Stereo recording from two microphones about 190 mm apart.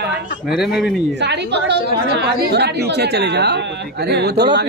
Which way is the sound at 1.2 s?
65° right (ahead or behind).